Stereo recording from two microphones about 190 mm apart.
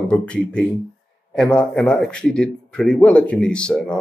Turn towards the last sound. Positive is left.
turn(degrees=5)  # may be behind; listen again after turning